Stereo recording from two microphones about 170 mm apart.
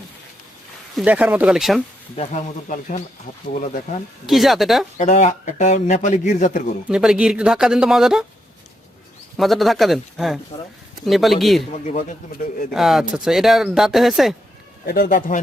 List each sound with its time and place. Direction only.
0.9 s speech: 10° right (ahead or behind)
2.1 s a man's voice: 45° left (ahead or behind)
4.3 s speech: centre (ahead or behind)
4.9 s a man's voice: 45° left (ahead or behind)
6.8 s speech: 5° right (ahead or behind)
9.4 s speech: centre (ahead or behind)
11.7 s a man's voice: 45° left (ahead or behind)
12.7 s speech: centre (ahead or behind)
14.8 s speech: 60° left (ahead or behind)